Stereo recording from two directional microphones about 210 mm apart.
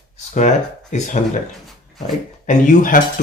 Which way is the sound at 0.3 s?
35° left (ahead or behind).